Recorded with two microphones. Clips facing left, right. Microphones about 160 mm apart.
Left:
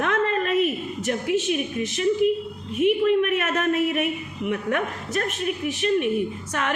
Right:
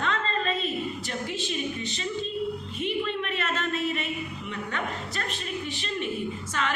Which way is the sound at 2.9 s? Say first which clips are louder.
Left 10 dB; 70° left (ahead or behind).